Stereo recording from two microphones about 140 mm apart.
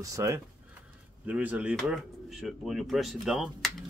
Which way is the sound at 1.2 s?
10° right (ahead or behind).